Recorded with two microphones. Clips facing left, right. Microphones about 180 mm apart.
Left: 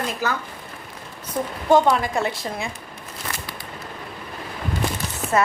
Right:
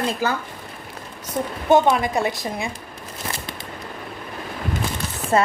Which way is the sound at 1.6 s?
20° right (ahead or behind).